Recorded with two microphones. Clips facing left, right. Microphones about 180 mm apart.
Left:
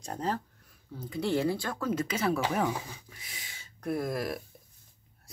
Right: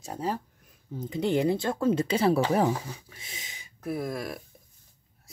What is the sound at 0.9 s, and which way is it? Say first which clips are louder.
Speech: right 3 dB; 20° right (ahead or behind).